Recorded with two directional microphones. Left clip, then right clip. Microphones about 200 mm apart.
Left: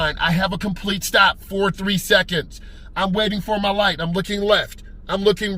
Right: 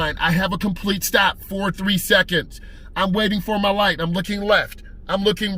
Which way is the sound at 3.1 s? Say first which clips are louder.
Even; 30° right (ahead or behind).